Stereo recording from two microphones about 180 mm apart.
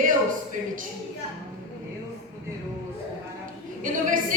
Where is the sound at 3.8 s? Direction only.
45° right (ahead or behind).